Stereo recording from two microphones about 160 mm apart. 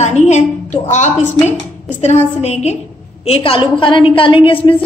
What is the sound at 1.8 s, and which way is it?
A woman's voice, 45° left (ahead or behind).